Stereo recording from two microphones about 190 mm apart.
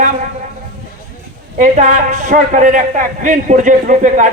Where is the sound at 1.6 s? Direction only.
40° right (ahead or behind).